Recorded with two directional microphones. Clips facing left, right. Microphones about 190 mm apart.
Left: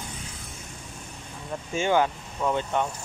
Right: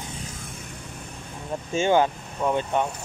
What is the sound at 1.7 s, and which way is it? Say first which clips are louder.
Speech: right 3 dB; 25° right (ahead or behind).